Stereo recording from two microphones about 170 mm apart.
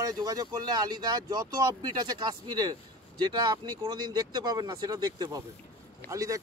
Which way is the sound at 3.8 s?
25° right (ahead or behind).